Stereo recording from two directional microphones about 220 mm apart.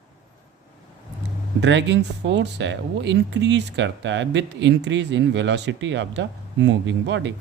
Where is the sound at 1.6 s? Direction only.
55° right (ahead or behind).